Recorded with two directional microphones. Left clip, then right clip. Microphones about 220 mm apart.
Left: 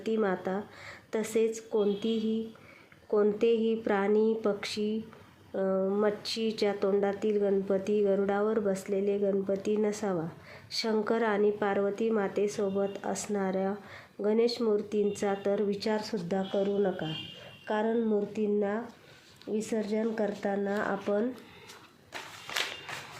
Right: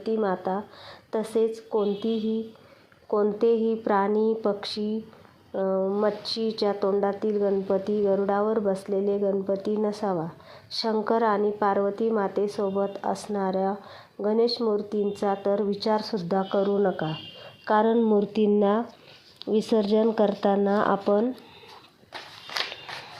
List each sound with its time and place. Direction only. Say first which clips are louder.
0.0 s speech: right 4 dB; 5° right (ahead or behind)
3.1 s speech: right 3 dB; 5° right (ahead or behind)
17.7 s speech: right 8 dB; 20° right (ahead or behind)
18.4 s speech: right 8 dB; 35° right (ahead or behind)